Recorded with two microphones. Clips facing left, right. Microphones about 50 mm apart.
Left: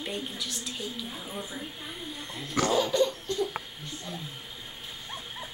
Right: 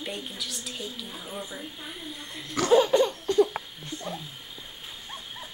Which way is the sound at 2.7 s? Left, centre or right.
Centre.